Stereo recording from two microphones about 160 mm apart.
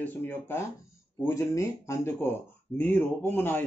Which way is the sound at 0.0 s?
10° left (ahead or behind).